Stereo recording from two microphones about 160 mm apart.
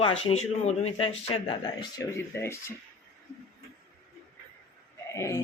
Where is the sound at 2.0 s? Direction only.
15° left (ahead or behind).